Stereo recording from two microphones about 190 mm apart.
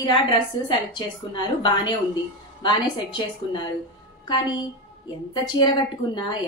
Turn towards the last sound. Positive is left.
turn(degrees=25)  # may be behind; listen again after turning